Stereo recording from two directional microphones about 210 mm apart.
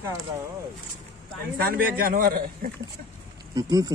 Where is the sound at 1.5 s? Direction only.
45° right (ahead or behind).